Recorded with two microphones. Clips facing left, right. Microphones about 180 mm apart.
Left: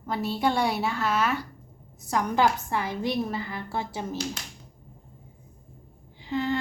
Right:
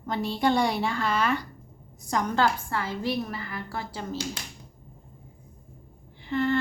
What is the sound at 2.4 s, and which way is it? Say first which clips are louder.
A woman's voice: left 1 dB; 15° left (ahead or behind).